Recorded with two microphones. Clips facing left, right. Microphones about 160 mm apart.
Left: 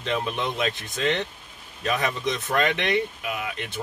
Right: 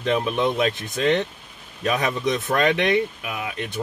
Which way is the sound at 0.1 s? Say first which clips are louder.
Right 6 dB; 20° right (ahead or behind).